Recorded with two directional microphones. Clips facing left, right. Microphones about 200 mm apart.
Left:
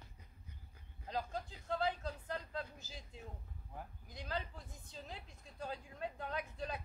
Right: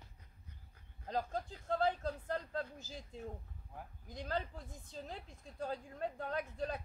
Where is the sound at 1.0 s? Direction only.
45° right (ahead or behind).